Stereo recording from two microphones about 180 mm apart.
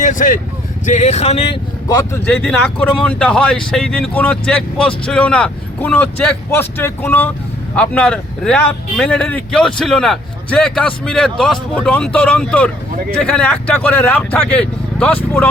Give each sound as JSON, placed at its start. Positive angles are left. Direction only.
{"t": 0.0, "sound": "speech", "side_deg": 45}
{"t": 1.9, "sound": "speech", "side_deg": 15}